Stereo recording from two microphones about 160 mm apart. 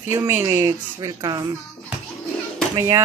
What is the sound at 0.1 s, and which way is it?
Speech, 15° right (ahead or behind).